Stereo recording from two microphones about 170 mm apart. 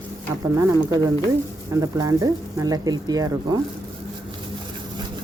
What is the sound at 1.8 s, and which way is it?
Speech, 20° right (ahead or behind).